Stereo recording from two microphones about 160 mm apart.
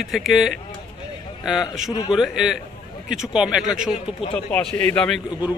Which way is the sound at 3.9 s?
35° left (ahead or behind).